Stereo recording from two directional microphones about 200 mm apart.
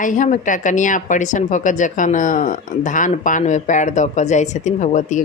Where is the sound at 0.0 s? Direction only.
40° left (ahead or behind).